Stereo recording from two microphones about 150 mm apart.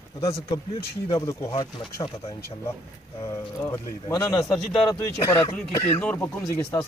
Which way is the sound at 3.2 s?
20° left (ahead or behind).